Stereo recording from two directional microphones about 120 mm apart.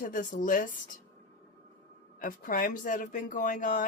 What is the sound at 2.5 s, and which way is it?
A woman's voice, 90° left.